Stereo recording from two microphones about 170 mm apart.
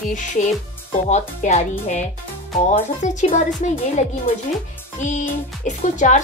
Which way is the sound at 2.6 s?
45° left (ahead or behind).